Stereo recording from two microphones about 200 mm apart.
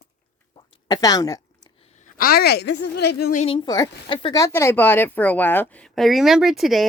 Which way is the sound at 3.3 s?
25° left (ahead or behind).